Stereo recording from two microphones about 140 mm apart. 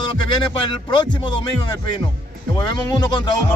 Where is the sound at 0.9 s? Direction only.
35° left (ahead or behind).